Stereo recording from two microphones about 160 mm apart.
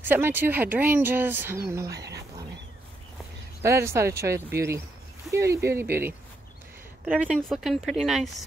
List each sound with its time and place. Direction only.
0.0 s speech: 15° right (ahead or behind)
1.9 s speech: 90° right
3.6 s speech: 15° right (ahead or behind); by 8.5 s centre (ahead or behind)